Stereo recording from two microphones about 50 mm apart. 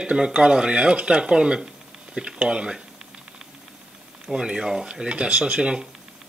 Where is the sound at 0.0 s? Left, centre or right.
Right.